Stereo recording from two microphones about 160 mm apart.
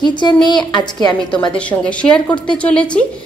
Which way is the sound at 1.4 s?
5° left (ahead or behind).